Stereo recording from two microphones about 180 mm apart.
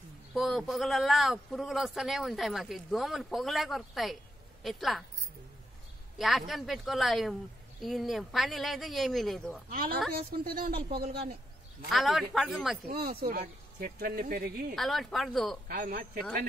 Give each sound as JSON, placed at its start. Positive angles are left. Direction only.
{"t": 0.3, "sound": "speech", "side_deg": 0}
{"t": 6.1, "sound": "speech", "side_deg": 0}
{"t": 10.1, "sound": "speech", "side_deg": -55}
{"t": 11.9, "sound": "speech", "side_deg": 0}
{"t": 12.8, "sound": "speech", "side_deg": -55}
{"t": 14.8, "sound": "speech", "side_deg": 0}
{"t": 15.7, "sound": "speech", "side_deg": -55}